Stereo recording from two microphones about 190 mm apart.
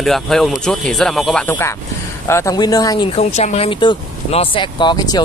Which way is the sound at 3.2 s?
35° left (ahead or behind).